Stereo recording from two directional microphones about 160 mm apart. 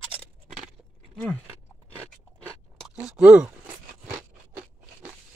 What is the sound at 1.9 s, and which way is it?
Biting, 15° right (ahead or behind).